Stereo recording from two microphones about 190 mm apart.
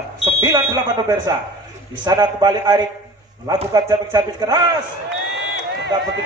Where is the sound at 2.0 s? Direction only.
20° right (ahead or behind).